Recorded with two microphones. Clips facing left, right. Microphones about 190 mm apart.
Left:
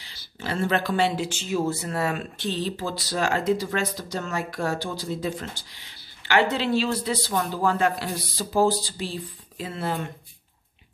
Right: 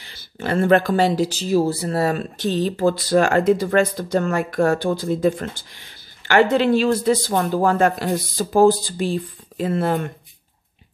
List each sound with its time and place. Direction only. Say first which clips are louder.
0.0 s speech: right 7 dB; 55° right (ahead or behind)